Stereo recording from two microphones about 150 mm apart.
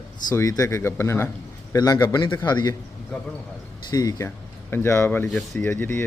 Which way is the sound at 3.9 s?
25° left (ahead or behind).